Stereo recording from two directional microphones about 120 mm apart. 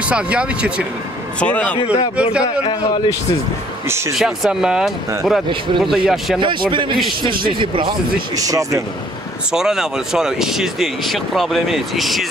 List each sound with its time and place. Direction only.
0.1 s speech: 10° right (ahead or behind)
1.4 s speech: 10° left (ahead or behind)
4.1 s speech: centre (ahead or behind)
6.4 s a man's voice: 45° right (ahead or behind)
8.4 s speech: 30° right (ahead or behind)
9.5 s speech: 5° right (ahead or behind)